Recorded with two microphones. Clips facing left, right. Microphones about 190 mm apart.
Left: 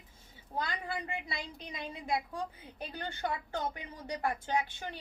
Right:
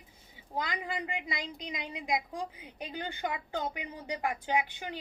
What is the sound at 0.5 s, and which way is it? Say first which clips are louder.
A woman's voice: right 2 dB; 15° right (ahead or behind).